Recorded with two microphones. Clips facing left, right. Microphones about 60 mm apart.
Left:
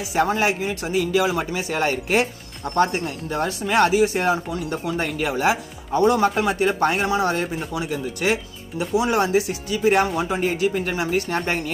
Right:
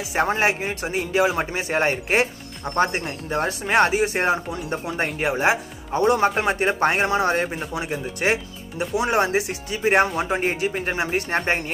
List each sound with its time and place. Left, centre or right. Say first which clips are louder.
0.1 s speech: left 1 dB; right